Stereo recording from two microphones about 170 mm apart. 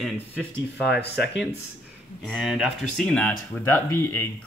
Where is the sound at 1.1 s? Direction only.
90° left.